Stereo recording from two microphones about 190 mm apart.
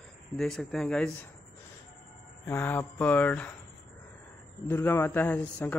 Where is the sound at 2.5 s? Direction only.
10° left (ahead or behind).